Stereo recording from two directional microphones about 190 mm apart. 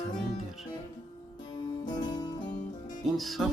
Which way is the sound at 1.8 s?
20° left (ahead or behind).